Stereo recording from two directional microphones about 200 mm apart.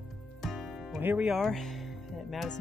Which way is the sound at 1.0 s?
5° right (ahead or behind).